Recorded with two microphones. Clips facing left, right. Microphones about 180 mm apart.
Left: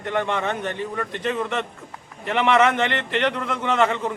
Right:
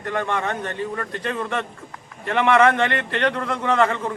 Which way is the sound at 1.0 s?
10° left (ahead or behind).